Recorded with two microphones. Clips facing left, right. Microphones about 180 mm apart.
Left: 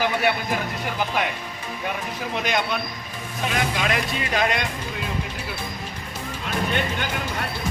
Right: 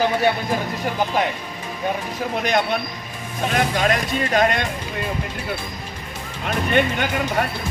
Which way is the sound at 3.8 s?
45° right (ahead or behind).